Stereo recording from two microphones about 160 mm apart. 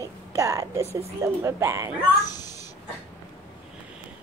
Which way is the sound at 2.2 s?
25° left (ahead or behind).